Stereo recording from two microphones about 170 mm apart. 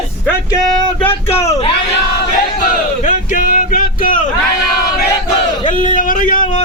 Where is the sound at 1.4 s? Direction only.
15° left (ahead or behind).